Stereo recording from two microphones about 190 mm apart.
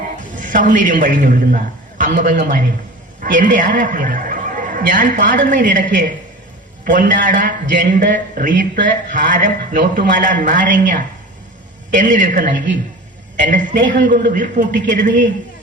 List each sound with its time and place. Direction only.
0.2 s a man's voice: 45° right (ahead or behind)
6.8 s a man's voice: 45° right (ahead or behind)